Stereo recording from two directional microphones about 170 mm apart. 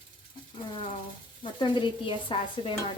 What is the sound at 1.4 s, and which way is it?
Stir, 30° left (ahead or behind).